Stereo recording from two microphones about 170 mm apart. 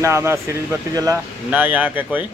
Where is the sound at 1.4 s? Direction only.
10° right (ahead or behind).